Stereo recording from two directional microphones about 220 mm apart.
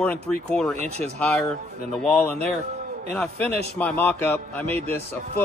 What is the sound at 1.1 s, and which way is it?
Speech, 5° left (ahead or behind).